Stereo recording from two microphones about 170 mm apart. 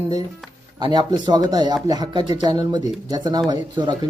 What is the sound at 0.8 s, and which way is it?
Speech, 25° right (ahead or behind).